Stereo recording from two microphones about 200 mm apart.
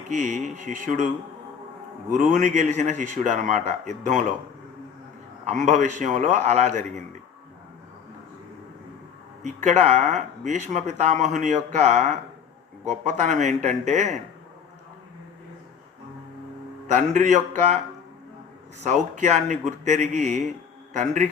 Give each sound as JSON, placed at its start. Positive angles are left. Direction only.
{"t": 0.1, "sound": "speech", "side_deg": -40}
{"t": 2.1, "sound": "speech", "side_deg": -40}
{"t": 5.5, "sound": "speech", "side_deg": -40}
{"t": 9.4, "sound": "speech", "side_deg": -35}
{"t": 16.8, "sound": "speech", "side_deg": -40}
{"t": 19.1, "sound": "speech", "side_deg": -40}